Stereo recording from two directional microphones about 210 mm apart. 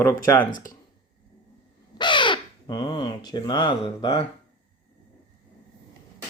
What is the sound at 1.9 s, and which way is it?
Speech, 20° left (ahead or behind).